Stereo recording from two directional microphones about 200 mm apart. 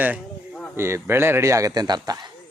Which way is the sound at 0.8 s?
15° right (ahead or behind).